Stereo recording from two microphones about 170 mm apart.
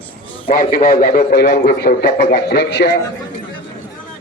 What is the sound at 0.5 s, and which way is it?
A man's voice, 60° left (ahead or behind).